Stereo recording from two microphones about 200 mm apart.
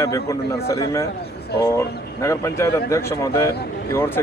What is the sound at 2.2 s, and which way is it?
Speech, 15° left (ahead or behind).